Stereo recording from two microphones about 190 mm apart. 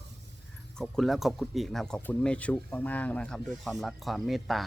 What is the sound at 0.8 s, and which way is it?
Speech, centre (ahead or behind).